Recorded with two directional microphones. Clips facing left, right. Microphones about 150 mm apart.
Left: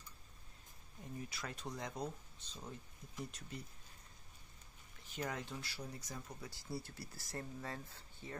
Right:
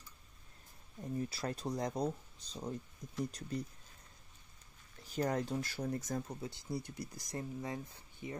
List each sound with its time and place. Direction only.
1.1 s speech: 35° right (ahead or behind)
5.0 s speech: 40° right (ahead or behind)
6.2 s speech: 25° right (ahead or behind)